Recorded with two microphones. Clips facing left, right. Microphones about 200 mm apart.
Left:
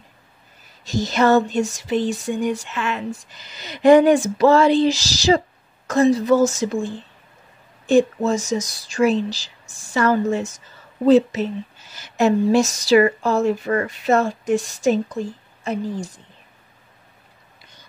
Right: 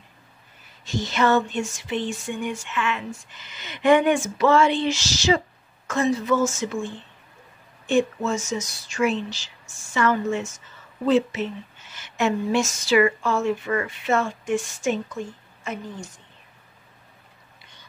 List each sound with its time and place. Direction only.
0.8 s a woman's voice: 40° left (ahead or behind)